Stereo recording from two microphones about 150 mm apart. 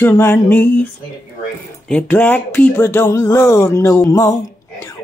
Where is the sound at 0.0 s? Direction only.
15° left (ahead or behind).